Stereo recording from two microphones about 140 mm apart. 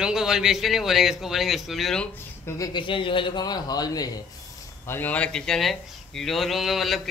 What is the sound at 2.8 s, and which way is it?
A man's voice, 35° left (ahead or behind).